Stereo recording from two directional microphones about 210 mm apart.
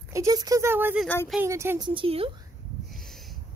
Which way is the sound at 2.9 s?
Centre (ahead or behind).